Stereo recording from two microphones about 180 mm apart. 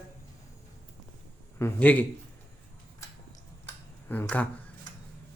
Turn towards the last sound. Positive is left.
turn(degrees=10)  # may be behind; listen again after turning